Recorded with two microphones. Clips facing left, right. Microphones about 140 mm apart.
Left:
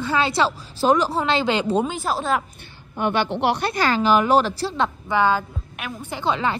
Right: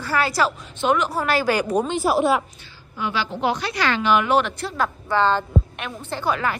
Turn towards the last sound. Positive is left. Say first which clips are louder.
# left 1 dB
turn(degrees=25)  # may be behind; listen again after turning